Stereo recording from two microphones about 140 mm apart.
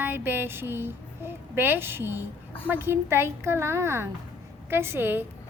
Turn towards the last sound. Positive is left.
turn(degrees=-15)  # may be behind; listen again after turning